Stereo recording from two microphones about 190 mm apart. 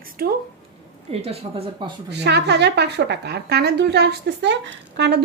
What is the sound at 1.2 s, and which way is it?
Speech, 30° right (ahead or behind).